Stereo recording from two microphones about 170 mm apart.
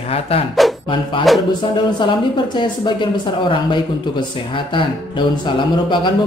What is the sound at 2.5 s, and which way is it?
Speech, 30° left (ahead or behind).